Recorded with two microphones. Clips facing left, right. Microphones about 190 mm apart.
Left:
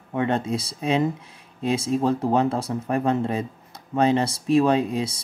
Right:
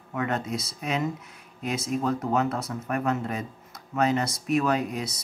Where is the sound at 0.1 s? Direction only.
30° left (ahead or behind).